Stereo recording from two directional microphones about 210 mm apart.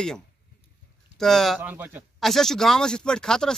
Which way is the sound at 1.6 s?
10° right (ahead or behind).